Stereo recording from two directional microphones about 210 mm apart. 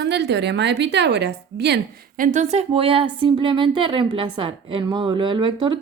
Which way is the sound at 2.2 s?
35° right (ahead or behind).